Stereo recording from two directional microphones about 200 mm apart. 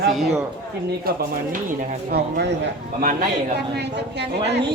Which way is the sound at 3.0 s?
45° right (ahead or behind).